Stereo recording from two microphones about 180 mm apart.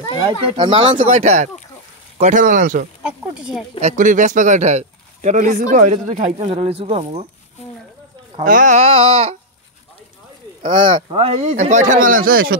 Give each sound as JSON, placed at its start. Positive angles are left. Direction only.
{"t": 0.6, "sound": "speech", "side_deg": -25}
{"t": 0.9, "sound": "speech", "side_deg": -40}
{"t": 3.0, "sound": "a sound", "side_deg": -5}
{"t": 3.8, "sound": "speech", "side_deg": -45}
{"t": 8.5, "sound": "speech", "side_deg": -45}
{"t": 10.6, "sound": "speech", "side_deg": -30}